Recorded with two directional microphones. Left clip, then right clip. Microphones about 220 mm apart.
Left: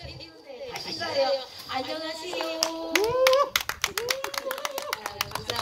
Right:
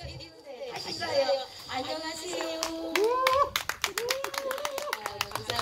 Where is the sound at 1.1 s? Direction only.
20° right (ahead or behind).